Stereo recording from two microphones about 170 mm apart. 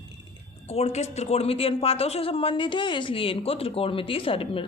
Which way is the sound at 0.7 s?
40° left (ahead or behind).